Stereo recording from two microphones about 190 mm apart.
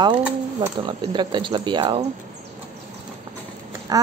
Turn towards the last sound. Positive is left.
turn(degrees=-20)  # may be behind; listen again after turning